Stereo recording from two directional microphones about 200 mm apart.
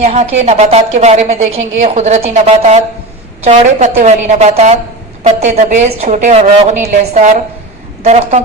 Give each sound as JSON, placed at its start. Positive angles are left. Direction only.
{"t": 0.0, "sound": "a woman's voice", "side_deg": -35}